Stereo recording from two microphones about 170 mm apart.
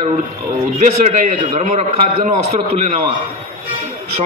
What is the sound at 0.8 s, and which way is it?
A man's voice, 45° right (ahead or behind).